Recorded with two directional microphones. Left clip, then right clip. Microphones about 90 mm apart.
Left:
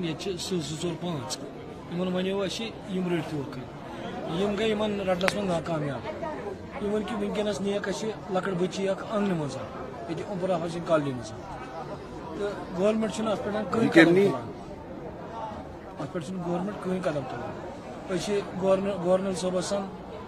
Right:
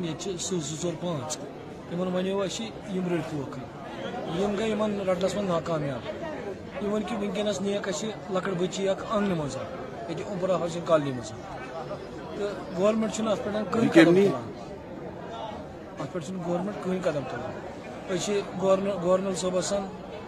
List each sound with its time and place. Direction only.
0.0 s speech: 30° right (ahead or behind)
4.4 s speech: 30° right (ahead or behind)
6.9 s speech: 20° right (ahead or behind)
12.4 s speech: 20° right (ahead or behind)
16.0 s speech: 20° right (ahead or behind)